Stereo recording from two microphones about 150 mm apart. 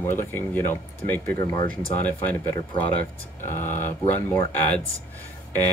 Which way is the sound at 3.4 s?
55° left (ahead or behind).